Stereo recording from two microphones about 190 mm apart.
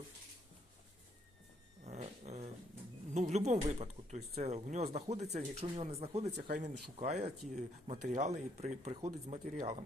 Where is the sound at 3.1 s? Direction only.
35° right (ahead or behind).